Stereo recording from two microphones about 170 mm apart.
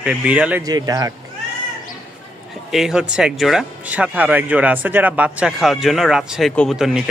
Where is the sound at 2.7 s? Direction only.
Centre (ahead or behind).